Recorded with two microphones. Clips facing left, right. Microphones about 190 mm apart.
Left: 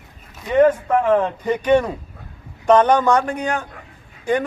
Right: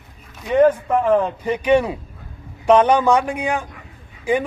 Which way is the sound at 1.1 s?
5° right (ahead or behind).